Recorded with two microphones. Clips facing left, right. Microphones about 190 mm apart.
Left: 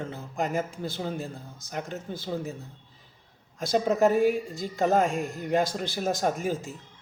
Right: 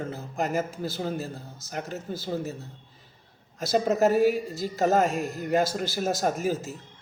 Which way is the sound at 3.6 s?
5° right (ahead or behind).